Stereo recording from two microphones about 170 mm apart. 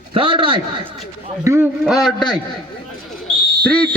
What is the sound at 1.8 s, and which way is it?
Speech, centre (ahead or behind).